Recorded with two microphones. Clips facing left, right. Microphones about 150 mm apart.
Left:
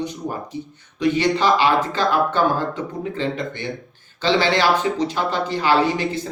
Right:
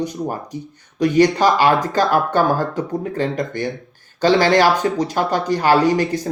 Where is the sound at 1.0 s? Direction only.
45° right (ahead or behind).